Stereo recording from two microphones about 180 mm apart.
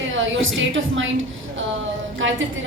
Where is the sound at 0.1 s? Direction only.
90° right.